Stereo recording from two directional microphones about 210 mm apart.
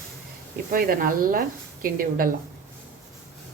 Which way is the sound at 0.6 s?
45° right (ahead or behind).